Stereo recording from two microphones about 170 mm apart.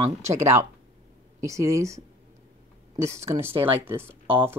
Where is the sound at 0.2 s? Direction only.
15° right (ahead or behind).